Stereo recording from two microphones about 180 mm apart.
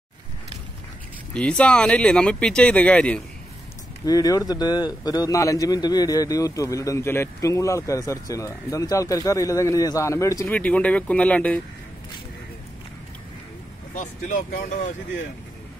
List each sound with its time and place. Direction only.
1.3 s speech: 5° left (ahead or behind)
4.0 s speech: 20° left (ahead or behind)
13.9 s speech: 45° left (ahead or behind)